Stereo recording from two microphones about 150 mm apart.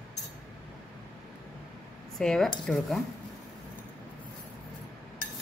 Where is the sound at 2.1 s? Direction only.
5° left (ahead or behind).